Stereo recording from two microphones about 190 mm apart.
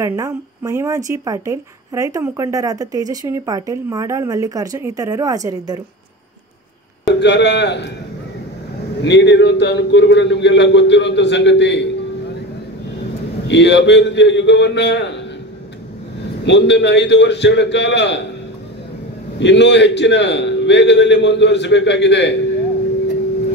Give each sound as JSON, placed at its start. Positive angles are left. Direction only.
{"t": 0.0, "sound": "speech", "side_deg": -15}
{"t": 7.2, "sound": "a man's voice", "side_deg": 65}
{"t": 9.0, "sound": "a man's voice", "side_deg": 65}
{"t": 13.5, "sound": "a man's voice", "side_deg": 70}
{"t": 16.4, "sound": "a man's voice", "side_deg": 65}
{"t": 19.4, "sound": "a man's voice", "side_deg": 70}